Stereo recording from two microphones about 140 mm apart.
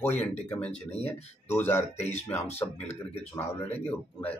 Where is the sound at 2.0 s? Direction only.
50° left (ahead or behind).